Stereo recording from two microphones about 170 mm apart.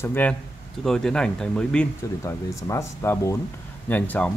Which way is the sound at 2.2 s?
15° left (ahead or behind).